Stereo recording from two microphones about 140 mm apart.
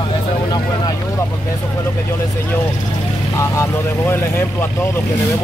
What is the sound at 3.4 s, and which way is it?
Speech, 20° left (ahead or behind).